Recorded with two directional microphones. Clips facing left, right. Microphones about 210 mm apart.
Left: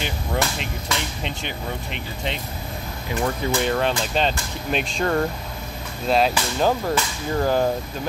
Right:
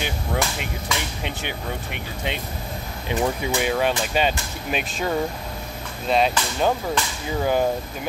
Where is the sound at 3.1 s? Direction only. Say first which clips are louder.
Even; 10° right (ahead or behind).